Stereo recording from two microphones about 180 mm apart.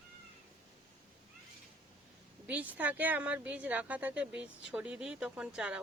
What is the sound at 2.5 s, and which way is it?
Speech, 10° right (ahead or behind).